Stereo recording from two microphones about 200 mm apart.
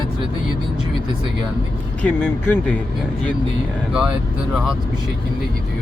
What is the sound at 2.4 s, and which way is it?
Speech, 10° left (ahead or behind).